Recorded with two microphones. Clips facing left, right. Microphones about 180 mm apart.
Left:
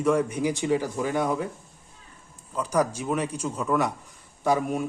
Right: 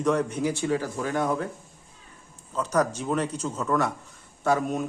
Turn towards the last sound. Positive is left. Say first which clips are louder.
# even
turn(degrees=10)  # may be behind; listen again after turning